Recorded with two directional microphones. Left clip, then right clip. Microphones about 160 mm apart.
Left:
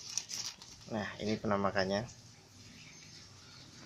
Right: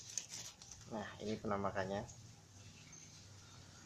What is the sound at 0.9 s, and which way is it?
Speech, 40° left (ahead or behind).